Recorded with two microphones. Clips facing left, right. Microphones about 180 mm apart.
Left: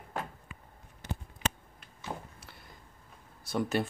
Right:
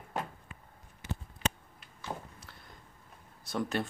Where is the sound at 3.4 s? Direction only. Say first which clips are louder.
Left 3 dB; 5° left (ahead or behind).